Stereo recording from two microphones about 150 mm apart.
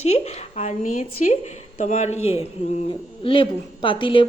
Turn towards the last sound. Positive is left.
turn(degrees=35)  # may be behind; listen again after turning